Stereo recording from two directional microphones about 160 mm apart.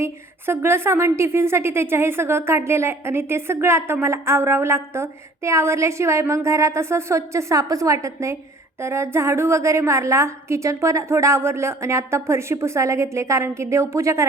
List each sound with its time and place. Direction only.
0.0 s speech: 15° right (ahead or behind)